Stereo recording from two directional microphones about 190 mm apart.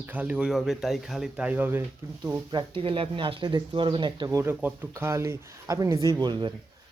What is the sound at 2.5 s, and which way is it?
Speech, 30° right (ahead or behind).